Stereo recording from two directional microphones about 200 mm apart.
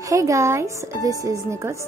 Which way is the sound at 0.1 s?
15° right (ahead or behind).